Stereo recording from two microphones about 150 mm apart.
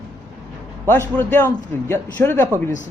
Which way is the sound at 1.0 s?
15° left (ahead or behind).